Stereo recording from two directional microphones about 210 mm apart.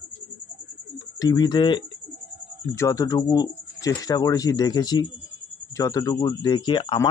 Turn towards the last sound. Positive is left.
turn(degrees=25)  # may be behind; listen again after turning